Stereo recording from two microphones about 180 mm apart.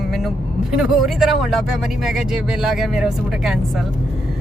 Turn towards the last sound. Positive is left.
turn(degrees=0)  # may be behind; listen again after turning